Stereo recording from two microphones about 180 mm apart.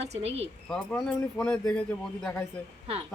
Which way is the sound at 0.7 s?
5° left (ahead or behind).